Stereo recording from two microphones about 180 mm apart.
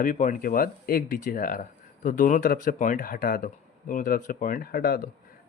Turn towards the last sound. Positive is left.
turn(degrees=55)  # may be behind; listen again after turning